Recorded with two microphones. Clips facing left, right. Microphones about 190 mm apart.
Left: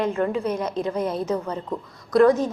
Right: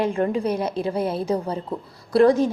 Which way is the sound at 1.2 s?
30° right (ahead or behind).